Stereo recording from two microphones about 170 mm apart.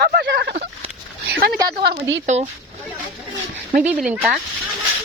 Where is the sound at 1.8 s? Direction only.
80° right.